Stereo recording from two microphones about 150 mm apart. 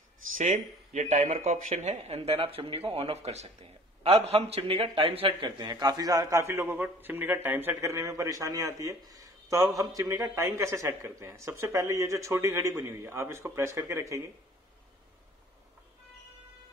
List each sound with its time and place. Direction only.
0.4 s speech: 55° right (ahead or behind); by 14.2 s 20° right (ahead or behind)